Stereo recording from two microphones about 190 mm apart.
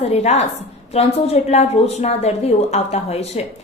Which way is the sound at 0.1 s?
35° left (ahead or behind).